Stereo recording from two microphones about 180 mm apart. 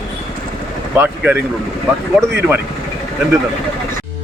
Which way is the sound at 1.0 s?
10° right (ahead or behind).